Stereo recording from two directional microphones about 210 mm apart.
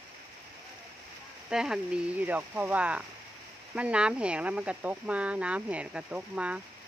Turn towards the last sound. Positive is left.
turn(degrees=-5)  # may be behind; listen again after turning